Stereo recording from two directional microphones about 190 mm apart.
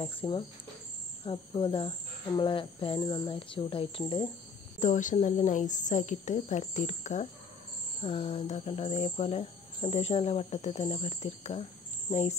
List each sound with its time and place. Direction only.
0.0 s speech: 25° left (ahead or behind)
4.7 s cricket: 40° left (ahead or behind)